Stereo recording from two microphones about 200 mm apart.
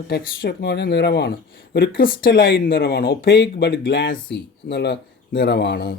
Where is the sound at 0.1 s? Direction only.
55° left (ahead or behind).